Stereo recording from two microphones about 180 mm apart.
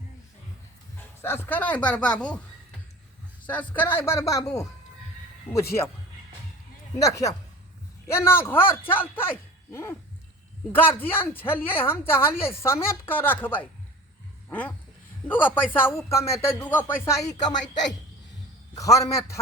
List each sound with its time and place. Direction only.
1.2 s speech: 15° left (ahead or behind)
3.4 s a man's voice: 10° left (ahead or behind)
7.0 s speech: 20° left (ahead or behind)
15.3 s speech: 10° left (ahead or behind)
18.7 s speech: 20° left (ahead or behind)